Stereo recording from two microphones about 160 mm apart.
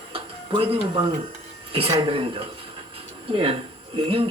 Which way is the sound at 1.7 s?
35° right (ahead or behind).